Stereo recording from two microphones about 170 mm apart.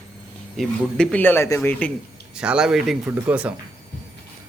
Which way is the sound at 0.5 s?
5° left (ahead or behind).